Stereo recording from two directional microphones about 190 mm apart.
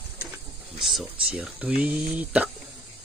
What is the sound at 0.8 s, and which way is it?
Speech, 5° right (ahead or behind).